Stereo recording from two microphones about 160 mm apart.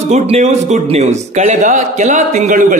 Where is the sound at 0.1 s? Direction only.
45° right (ahead or behind).